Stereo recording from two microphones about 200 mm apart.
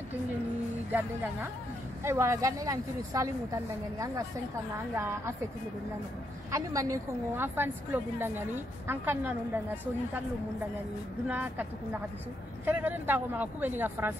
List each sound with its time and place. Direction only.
2.0 s a woman's voice: 15° right (ahead or behind)
4.9 s a woman's voice: 10° right (ahead or behind)
6.5 s a woman's voice: 15° right (ahead or behind)
11.2 s a woman's voice: 10° right (ahead or behind)